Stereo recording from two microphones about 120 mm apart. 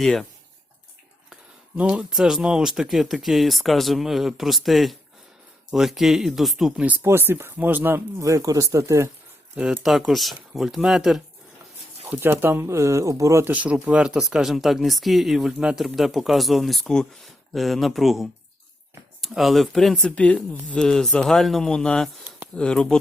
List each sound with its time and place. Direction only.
0.0 s speech: 5° left (ahead or behind)
1.3 s speech: 10° right (ahead or behind)
7.0 s speech: 20° right (ahead or behind)
9.8 s speech: 5° right (ahead or behind)
12.0 s speech: 15° right (ahead or behind); by 23.0 s 5° left (ahead or behind)